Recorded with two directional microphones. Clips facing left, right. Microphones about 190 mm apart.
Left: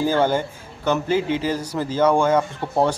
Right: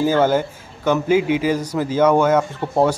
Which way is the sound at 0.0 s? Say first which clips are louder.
Right 3 dB; 10° right (ahead or behind).